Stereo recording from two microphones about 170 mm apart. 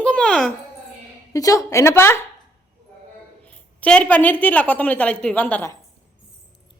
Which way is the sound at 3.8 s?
5° left (ahead or behind).